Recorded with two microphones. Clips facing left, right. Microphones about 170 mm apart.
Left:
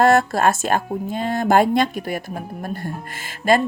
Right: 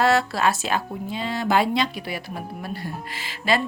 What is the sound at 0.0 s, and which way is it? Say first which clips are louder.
Speech: left 5 dB; 50° left (ahead or behind).